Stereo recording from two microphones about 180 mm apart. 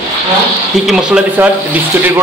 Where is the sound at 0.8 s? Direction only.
5° right (ahead or behind).